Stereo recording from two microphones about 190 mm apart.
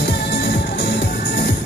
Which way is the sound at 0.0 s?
60° left (ahead or behind).